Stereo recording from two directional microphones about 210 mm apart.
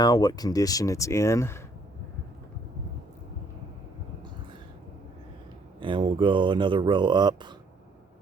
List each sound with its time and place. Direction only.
0.0 s speech: 20° left (ahead or behind)
5.8 s speech: 25° right (ahead or behind)